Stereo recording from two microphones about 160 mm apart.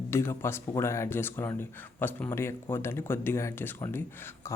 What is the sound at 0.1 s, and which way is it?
Speech, 15° left (ahead or behind).